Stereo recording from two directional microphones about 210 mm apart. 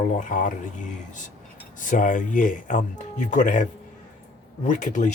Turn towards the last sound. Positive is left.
turn(degrees=35)  # may be behind; listen again after turning